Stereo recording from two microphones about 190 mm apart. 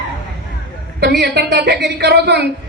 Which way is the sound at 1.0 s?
60° right (ahead or behind).